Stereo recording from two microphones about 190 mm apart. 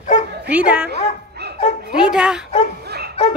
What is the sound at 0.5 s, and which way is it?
Speech, 5° right (ahead or behind).